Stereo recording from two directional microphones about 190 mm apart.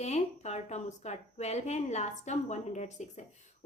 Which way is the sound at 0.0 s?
35° left (ahead or behind).